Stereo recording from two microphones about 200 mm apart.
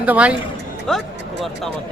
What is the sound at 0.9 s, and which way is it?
Music, centre (ahead or behind).